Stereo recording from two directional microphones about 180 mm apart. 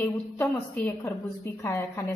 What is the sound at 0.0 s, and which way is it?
A woman's voice, 10° left (ahead or behind).